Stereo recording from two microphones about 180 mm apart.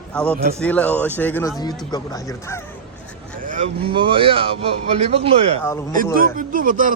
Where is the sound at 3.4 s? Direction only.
45° right (ahead or behind).